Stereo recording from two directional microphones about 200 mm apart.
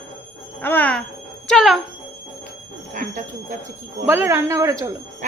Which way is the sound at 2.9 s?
40° right (ahead or behind).